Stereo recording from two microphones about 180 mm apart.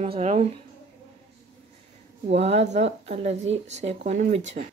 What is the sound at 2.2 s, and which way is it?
Speech, 35° right (ahead or behind).